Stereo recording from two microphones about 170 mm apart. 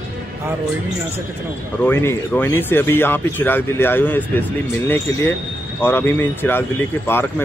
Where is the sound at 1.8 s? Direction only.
10° left (ahead or behind).